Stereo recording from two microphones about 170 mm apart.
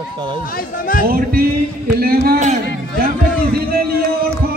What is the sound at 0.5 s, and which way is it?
Speech, 55° left (ahead or behind).